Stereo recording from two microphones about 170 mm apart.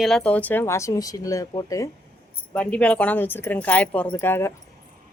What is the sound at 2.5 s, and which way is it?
Speech, 5° left (ahead or behind).